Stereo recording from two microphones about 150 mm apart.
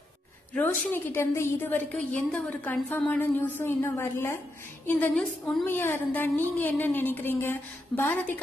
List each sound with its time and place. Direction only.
0.6 s a woman's voice: 15° left (ahead or behind)
4.8 s a woman's voice: 5° left (ahead or behind)